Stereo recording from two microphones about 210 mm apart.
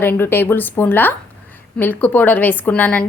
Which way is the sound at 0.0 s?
10° left (ahead or behind).